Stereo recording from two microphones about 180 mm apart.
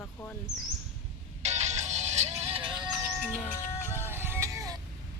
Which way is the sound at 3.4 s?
15° left (ahead or behind).